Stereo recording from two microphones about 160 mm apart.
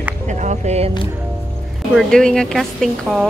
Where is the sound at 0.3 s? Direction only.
50° right (ahead or behind).